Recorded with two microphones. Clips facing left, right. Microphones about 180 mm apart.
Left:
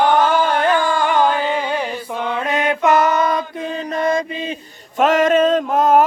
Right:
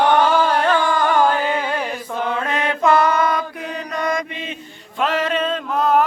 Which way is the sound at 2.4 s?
20° left (ahead or behind).